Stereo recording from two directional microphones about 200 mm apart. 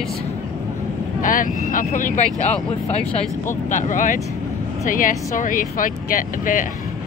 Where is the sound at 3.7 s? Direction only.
40° left (ahead or behind).